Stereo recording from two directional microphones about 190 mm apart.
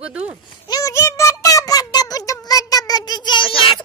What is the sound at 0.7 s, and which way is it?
Music, 20° left (ahead or behind).